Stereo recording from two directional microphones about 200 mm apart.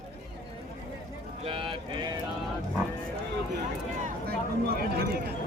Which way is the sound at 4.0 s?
50° right (ahead or behind).